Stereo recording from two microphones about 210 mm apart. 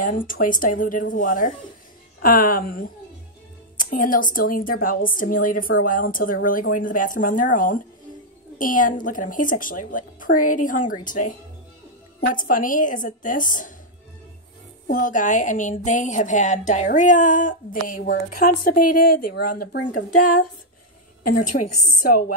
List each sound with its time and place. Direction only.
0.0 s a woman's voice: 40° left (ahead or behind)
12.4 s a woman's voice: 40° left (ahead or behind)
14.9 s a woman's voice: 40° left (ahead or behind)
21.3 s a woman's voice: 40° left (ahead or behind)